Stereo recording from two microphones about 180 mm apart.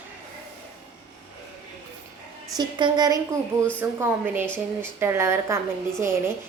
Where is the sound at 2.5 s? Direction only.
25° right (ahead or behind).